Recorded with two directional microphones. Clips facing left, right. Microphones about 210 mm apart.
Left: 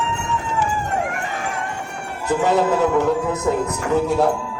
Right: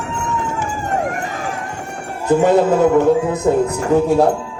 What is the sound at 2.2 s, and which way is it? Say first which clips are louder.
Speech: right 5 dB; 50° right (ahead or behind).